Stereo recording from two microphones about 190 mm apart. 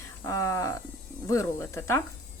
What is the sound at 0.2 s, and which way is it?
A woman's voice, 15° left (ahead or behind).